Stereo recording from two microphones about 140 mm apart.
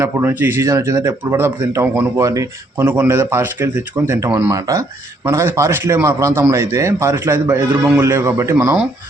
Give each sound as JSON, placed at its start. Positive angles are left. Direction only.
{"t": 0.0, "sound": "a man's voice", "side_deg": -15}